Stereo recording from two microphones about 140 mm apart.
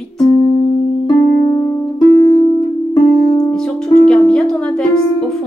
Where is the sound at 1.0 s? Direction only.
30° left (ahead or behind).